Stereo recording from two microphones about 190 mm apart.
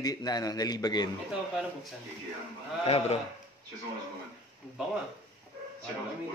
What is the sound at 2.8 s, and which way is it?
Speech, 30° left (ahead or behind).